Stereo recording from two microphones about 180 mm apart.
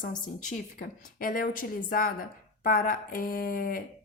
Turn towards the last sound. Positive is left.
turn(degrees=50)  # may be behind; listen again after turning